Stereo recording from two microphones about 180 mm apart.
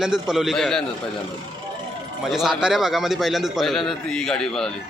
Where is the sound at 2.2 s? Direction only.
Centre (ahead or behind).